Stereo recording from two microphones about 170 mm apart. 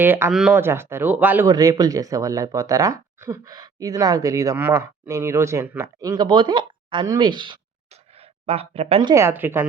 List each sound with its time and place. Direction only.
0.0 s speech: 10° right (ahead or behind)
1.5 s speech: 20° right (ahead or behind)
9.1 s speech: 15° right (ahead or behind)